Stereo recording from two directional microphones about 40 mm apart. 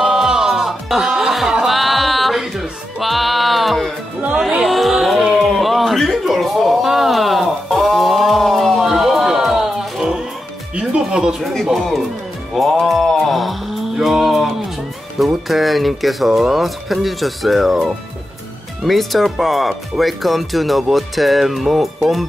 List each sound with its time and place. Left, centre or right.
0.0 s music: centre
4.6 s a sound: centre
10.8 s music: centre
11.7 s speech: centre
12.8 s mantra: centre
15.1 s speech: centre